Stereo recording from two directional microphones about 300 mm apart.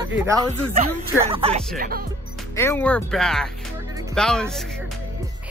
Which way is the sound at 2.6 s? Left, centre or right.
Centre.